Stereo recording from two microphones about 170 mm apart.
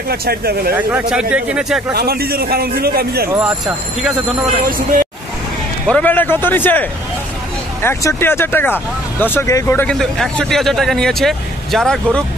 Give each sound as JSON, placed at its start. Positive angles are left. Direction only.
{"t": 0.1, "sound": "a man's voice", "side_deg": -65}
{"t": 0.7, "sound": "speech", "side_deg": -10}
{"t": 2.0, "sound": "a man's voice", "side_deg": -65}
{"t": 3.3, "sound": "speech", "side_deg": -5}
{"t": 5.9, "sound": "a man's voice", "side_deg": 10}